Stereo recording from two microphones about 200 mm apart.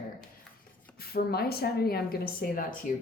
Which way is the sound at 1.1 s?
50° left (ahead or behind).